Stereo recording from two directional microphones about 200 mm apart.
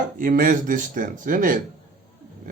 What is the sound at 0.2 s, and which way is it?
Speech, 45° right (ahead or behind).